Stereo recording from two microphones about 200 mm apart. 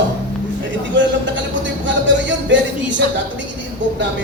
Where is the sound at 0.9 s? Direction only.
65° right (ahead or behind).